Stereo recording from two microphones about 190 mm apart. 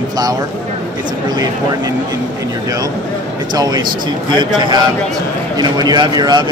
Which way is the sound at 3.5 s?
20° right (ahead or behind).